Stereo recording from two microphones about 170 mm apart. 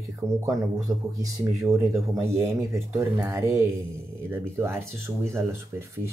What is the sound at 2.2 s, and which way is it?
Speech, 15° right (ahead or behind).